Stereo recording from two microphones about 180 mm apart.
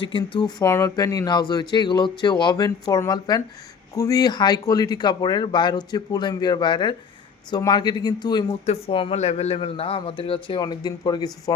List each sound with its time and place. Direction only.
0.0 s speech: 25° left (ahead or behind)
0.6 s a man's voice: 15° left (ahead or behind)